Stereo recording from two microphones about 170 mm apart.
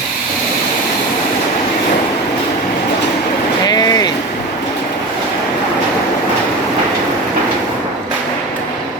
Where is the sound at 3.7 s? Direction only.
25° left (ahead or behind).